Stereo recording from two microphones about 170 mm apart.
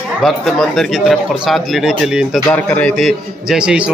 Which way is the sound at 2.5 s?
10° left (ahead or behind).